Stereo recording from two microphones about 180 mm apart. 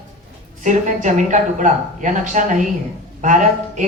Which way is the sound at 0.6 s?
45° right (ahead or behind).